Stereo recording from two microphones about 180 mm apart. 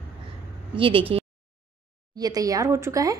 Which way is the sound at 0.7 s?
30° right (ahead or behind).